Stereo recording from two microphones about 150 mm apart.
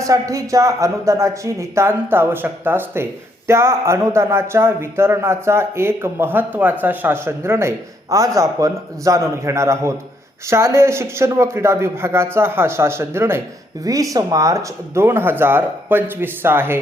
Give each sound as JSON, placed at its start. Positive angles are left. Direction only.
{"t": 0.0, "sound": "a man's voice", "side_deg": -20}